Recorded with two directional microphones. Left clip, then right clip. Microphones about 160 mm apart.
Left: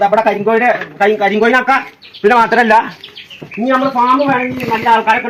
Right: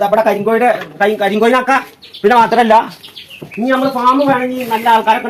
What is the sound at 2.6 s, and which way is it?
Speech, centre (ahead or behind).